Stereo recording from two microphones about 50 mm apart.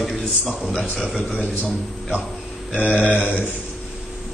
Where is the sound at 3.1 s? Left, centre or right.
Right.